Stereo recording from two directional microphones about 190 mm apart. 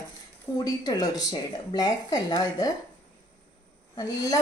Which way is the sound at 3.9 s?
20° left (ahead or behind).